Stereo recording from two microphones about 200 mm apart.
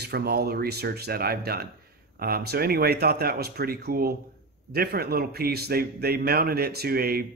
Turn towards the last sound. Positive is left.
turn(degrees=-50)  # may be behind; listen again after turning